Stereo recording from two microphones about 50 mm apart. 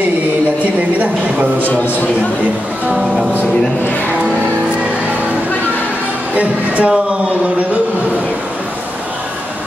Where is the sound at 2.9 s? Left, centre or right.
Centre.